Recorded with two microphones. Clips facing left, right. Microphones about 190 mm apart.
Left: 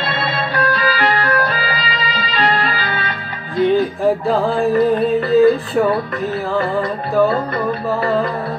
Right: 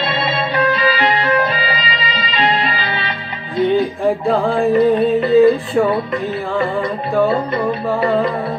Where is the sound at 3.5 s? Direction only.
Centre (ahead or behind).